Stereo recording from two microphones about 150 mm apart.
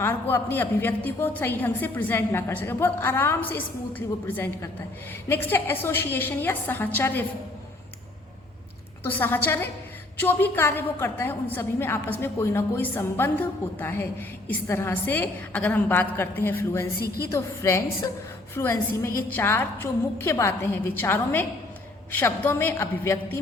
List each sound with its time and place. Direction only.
0.0 s a woman's voice: 15° left (ahead or behind)
9.0 s a woman's voice: 10° left (ahead or behind)
17.0 s a woman's voice: 90° left
17.3 s a woman's voice: 20° left (ahead or behind)